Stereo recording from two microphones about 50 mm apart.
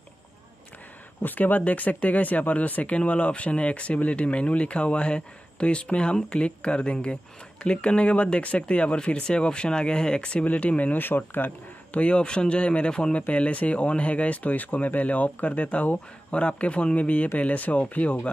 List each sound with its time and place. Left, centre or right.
1.2 s speech: left
11.0 s speech: left
12.0 s speech: left